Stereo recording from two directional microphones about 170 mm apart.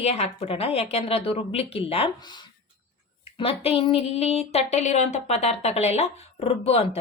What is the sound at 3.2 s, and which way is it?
A woman's voice, 35° left (ahead or behind).